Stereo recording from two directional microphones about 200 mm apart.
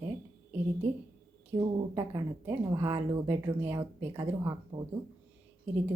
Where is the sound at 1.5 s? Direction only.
25° right (ahead or behind).